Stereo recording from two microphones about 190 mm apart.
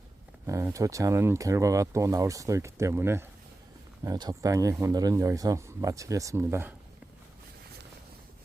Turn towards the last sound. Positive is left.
turn(degrees=-15)  # may be behind; listen again after turning